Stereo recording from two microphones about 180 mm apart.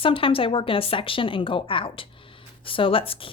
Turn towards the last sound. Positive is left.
turn(degrees=30)  # may be behind; listen again after turning